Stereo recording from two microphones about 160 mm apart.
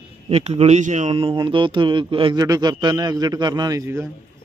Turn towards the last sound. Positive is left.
turn(degrees=-20)  # may be behind; listen again after turning